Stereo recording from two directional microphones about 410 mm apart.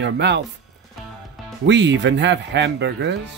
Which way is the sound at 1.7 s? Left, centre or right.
Right.